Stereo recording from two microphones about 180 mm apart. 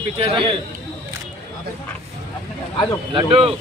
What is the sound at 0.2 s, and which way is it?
Speech, 30° right (ahead or behind).